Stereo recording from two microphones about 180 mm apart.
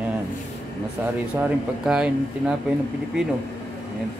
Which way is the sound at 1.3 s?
5° right (ahead or behind).